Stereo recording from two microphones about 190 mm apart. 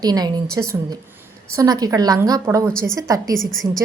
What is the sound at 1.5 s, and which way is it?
A woman's voice, 20° right (ahead or behind).